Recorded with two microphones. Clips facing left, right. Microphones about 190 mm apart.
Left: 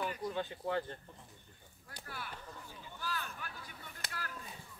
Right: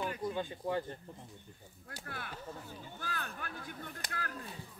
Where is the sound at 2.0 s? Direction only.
55° right (ahead or behind).